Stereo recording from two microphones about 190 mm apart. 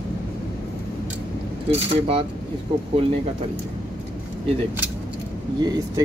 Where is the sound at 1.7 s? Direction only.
30° right (ahead or behind).